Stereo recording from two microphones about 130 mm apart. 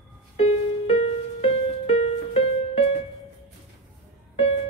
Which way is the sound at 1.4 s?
50° left (ahead or behind).